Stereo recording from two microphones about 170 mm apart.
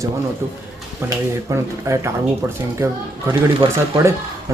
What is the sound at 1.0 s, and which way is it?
Speech, 20° right (ahead or behind).